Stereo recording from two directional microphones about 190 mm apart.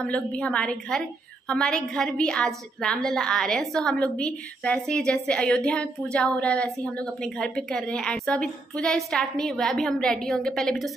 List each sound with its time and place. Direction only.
0.0 s a woman's voice: 5° left (ahead or behind)